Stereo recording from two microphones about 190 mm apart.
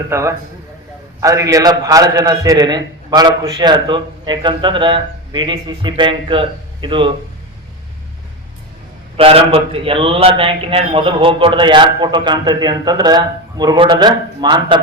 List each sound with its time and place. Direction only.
0.1 s a man's voice: 15° right (ahead or behind)
9.1 s a man's voice: 30° right (ahead or behind)